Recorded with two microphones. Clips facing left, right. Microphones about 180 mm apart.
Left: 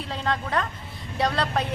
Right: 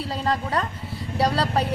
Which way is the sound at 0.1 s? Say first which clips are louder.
Right 1 dB; 10° right (ahead or behind).